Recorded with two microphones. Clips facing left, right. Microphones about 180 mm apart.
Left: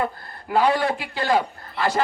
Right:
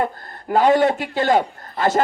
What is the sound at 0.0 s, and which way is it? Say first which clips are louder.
Speech: right 3 dB; 45° right (ahead or behind).